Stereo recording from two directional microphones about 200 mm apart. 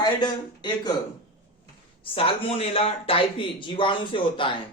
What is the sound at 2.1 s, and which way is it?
Speech, 30° left (ahead or behind).